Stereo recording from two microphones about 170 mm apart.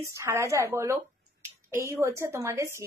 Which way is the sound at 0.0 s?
15° right (ahead or behind).